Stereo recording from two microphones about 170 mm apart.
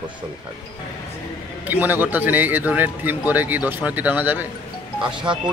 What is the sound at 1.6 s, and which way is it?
Speech, 10° right (ahead or behind).